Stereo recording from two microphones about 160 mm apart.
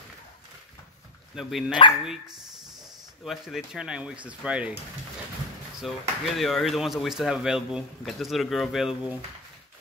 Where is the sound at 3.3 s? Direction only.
5° right (ahead or behind).